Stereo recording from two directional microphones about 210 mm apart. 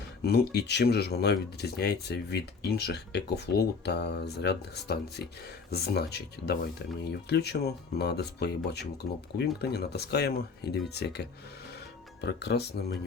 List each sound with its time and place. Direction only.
0.2 s speech: 50° left (ahead or behind)